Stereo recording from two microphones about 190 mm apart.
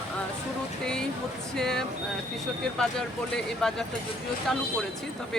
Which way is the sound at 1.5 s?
5° left (ahead or behind).